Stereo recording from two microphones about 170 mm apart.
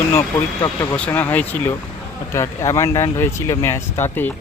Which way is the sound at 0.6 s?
20° left (ahead or behind).